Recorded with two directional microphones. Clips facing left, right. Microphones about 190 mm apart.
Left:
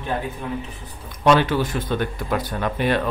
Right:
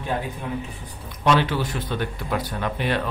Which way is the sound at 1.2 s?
50° left (ahead or behind).